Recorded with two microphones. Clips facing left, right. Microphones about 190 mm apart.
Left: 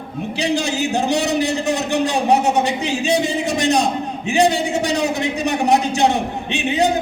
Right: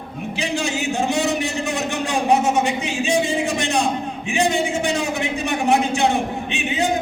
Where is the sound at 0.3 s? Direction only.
35° left (ahead or behind).